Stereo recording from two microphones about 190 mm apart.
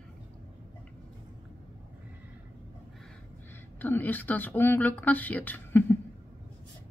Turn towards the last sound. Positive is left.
turn(degrees=10)  # may be behind; listen again after turning